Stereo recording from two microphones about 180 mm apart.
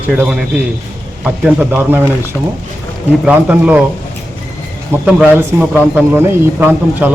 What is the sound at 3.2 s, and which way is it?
Speech, 10° right (ahead or behind).